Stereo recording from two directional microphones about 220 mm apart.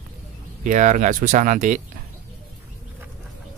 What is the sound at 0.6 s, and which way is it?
Speech, 35° right (ahead or behind).